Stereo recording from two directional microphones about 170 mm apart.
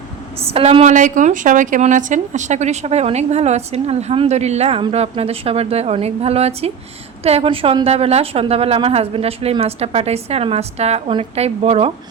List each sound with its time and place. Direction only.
0.4 s a woman's voice: 35° right (ahead or behind)